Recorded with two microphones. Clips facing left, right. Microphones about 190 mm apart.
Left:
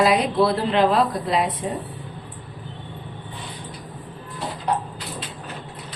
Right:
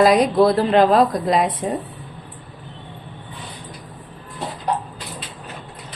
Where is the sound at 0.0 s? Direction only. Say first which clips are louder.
Right 4 dB; 40° right (ahead or behind).